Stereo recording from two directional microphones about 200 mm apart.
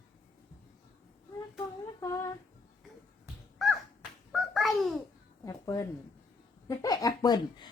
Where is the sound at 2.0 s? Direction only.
15° left (ahead or behind).